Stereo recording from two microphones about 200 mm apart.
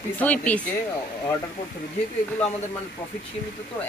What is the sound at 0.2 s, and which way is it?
Speech, 5° left (ahead or behind).